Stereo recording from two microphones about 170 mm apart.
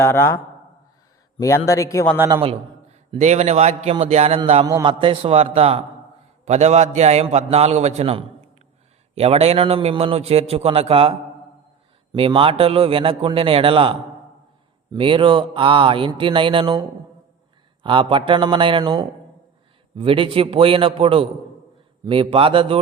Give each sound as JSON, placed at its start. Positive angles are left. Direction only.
{"t": 0.0, "sound": "a man's voice", "side_deg": 15}
{"t": 2.1, "sound": "a man's voice", "side_deg": -15}
{"t": 2.4, "sound": "a man's voice", "side_deg": -35}
{"t": 4.6, "sound": "a man's voice", "side_deg": -25}
{"t": 12.1, "sound": "a man's voice", "side_deg": -30}
{"t": 14.9, "sound": "mantra", "side_deg": -30}
{"t": 17.8, "sound": "mantra", "side_deg": -30}
{"t": 20.0, "sound": "a man's voice", "side_deg": -30}